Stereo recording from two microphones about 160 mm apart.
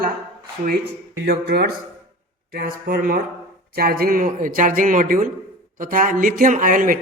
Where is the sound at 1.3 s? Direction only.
70° right (ahead or behind).